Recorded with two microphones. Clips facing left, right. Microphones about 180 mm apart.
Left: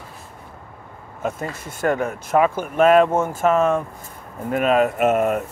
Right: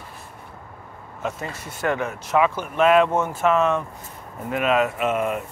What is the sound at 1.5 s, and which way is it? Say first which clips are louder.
Speech: left 3 dB; 50° left (ahead or behind).